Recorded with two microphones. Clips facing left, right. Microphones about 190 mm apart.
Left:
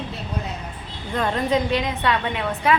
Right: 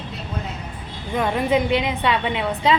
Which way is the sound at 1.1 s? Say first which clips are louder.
Right 2 dB; 10° right (ahead or behind).